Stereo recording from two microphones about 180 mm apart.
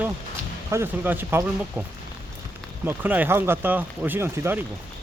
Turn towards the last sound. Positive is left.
turn(degrees=-10)  # may be behind; listen again after turning